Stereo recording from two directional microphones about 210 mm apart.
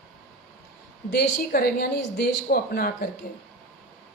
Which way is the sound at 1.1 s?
45° left (ahead or behind).